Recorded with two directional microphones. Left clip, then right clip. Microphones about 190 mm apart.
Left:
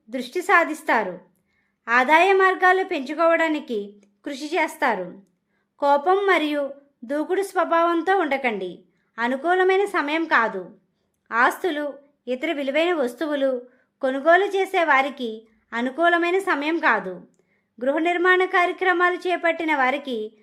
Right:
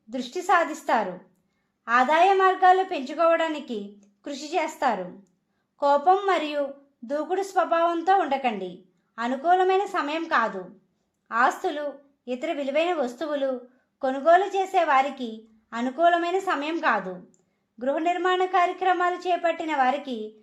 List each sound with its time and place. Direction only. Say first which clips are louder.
0.1 s a woman's voice: left 3 dB; 25° left (ahead or behind)